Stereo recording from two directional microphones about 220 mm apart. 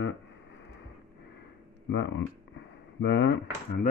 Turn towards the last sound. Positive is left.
turn(degrees=45)  # may be behind; listen again after turning